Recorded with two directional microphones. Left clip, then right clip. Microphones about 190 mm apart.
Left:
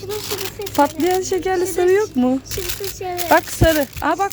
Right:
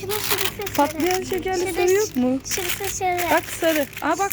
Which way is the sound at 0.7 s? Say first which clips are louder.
Left 5 dB; 20° left (ahead or behind).